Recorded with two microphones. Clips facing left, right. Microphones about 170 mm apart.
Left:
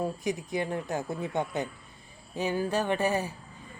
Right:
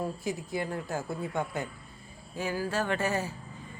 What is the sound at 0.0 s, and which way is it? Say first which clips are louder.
A man's voice: left 2 dB; 20° left (ahead or behind).